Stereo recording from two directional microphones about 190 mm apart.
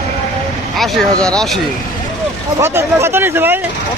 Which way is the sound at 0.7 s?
Centre (ahead or behind).